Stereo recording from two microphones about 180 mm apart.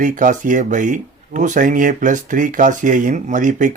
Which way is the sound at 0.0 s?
45° right (ahead or behind).